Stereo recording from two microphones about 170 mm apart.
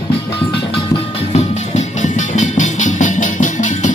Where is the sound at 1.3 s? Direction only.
45° left (ahead or behind).